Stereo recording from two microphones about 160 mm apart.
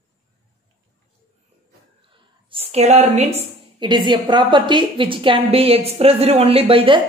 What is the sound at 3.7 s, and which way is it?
A woman's voice, 30° right (ahead or behind).